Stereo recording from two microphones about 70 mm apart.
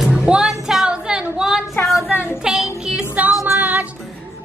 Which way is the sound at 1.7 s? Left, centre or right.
Left.